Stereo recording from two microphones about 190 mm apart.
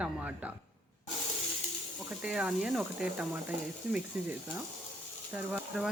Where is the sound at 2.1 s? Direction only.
5° right (ahead or behind).